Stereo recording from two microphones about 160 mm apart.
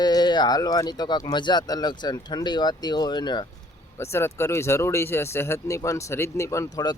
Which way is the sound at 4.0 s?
15° left (ahead or behind).